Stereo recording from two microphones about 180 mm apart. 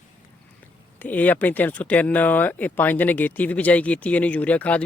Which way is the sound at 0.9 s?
10° left (ahead or behind).